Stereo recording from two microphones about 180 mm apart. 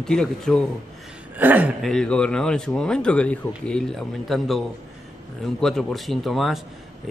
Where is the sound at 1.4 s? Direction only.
10° right (ahead or behind).